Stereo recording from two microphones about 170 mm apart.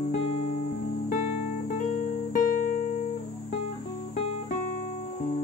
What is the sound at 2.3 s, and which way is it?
Music, 55° left (ahead or behind).